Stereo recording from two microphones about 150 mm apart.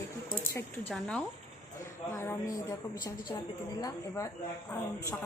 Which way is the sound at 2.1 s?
20° left (ahead or behind).